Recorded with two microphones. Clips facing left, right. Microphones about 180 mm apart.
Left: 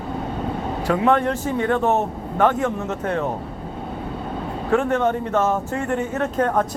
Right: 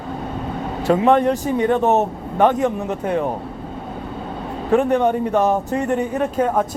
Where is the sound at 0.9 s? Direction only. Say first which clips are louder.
Right 4 dB; 20° right (ahead or behind).